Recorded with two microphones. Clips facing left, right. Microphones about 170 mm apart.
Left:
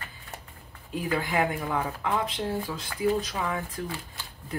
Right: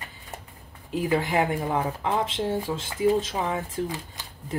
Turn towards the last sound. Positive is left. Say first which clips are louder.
# right 5 dB
turn(degrees=-20)  # may be behind; listen again after turning